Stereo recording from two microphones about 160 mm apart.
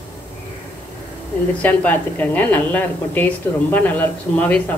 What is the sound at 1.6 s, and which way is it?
A woman's voice, 10° left (ahead or behind).